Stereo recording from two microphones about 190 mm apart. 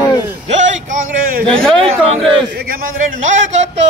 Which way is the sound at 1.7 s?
30° right (ahead or behind).